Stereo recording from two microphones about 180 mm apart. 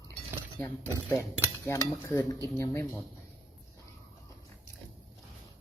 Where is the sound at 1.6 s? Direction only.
15° left (ahead or behind).